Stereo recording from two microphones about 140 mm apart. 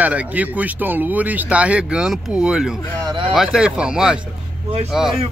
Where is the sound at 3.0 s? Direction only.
35° right (ahead or behind).